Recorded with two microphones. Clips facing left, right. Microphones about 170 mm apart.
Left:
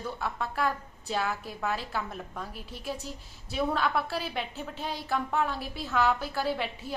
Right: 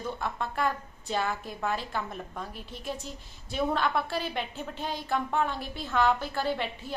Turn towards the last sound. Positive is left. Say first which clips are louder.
# even
turn(degrees=5)  # may be behind; listen again after turning